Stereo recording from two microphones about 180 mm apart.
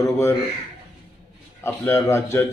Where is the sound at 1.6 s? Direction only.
15° left (ahead or behind).